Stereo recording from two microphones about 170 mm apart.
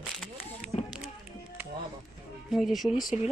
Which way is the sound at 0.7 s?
30° left (ahead or behind).